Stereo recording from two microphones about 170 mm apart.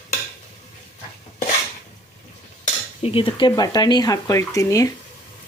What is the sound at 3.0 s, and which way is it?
Speech, 30° left (ahead or behind).